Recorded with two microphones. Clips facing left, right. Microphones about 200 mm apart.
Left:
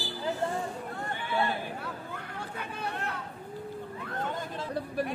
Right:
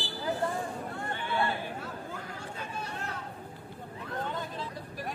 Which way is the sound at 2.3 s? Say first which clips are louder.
Left 1 dB; 60° left (ahead or behind).